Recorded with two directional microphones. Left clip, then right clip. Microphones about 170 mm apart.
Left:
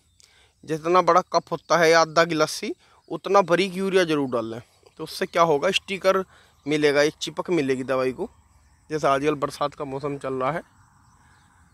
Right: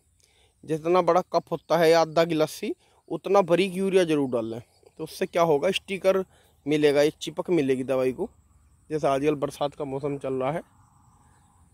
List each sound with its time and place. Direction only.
0.7 s speech: 15° right (ahead or behind)